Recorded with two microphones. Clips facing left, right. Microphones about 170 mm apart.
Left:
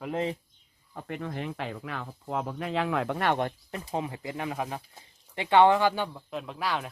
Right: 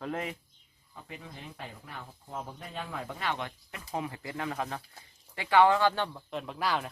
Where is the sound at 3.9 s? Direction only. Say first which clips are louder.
Left 2 dB; 20° left (ahead or behind).